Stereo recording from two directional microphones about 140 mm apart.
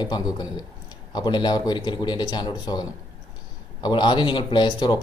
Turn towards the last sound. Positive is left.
turn(degrees=35)  # may be behind; listen again after turning